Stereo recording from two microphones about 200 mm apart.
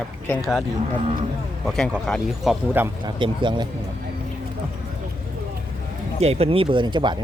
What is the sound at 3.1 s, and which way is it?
Speech, 25° right (ahead or behind).